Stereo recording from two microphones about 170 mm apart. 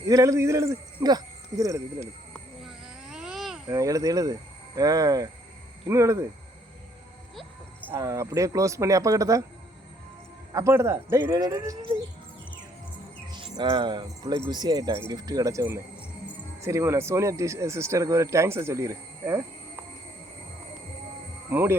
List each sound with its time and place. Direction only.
0.1 s speech: 20° right (ahead or behind)
2.3 s a sound: centre (ahead or behind)
3.7 s speech: 20° right (ahead or behind)
7.9 s speech: 20° right (ahead or behind)
10.5 s speech: 15° right (ahead or behind)
13.3 s speech: 30° right (ahead or behind)
21.5 s speech: 15° right (ahead or behind)